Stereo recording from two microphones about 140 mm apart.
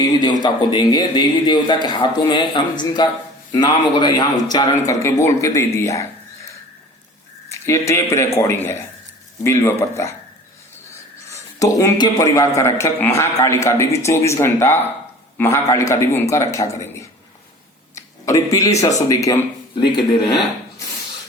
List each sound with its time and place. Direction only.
0.2 s a man's voice: 30° left (ahead or behind)
7.6 s a man's voice: 20° left (ahead or behind)
11.3 s a man's voice: 20° left (ahead or behind)
17.9 s a sound: 20° left (ahead or behind)
19.0 s a man's voice: 25° left (ahead or behind)